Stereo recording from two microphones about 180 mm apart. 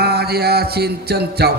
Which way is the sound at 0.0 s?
60° right (ahead or behind).